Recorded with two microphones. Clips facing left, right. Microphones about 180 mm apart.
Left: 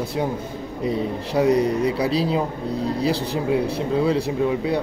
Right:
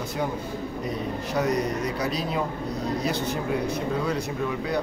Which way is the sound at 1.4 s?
30° left (ahead or behind).